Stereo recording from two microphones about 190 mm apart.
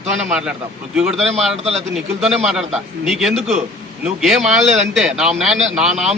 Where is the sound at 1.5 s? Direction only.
35° right (ahead or behind).